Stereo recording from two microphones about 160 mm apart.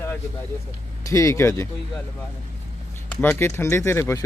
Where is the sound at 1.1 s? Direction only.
20° left (ahead or behind).